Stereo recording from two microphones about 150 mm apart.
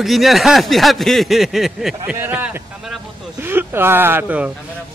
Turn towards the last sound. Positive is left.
turn(degrees=-10)  # may be behind; listen again after turning